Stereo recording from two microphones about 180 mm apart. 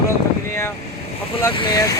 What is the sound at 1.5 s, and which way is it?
Speech, 25° left (ahead or behind).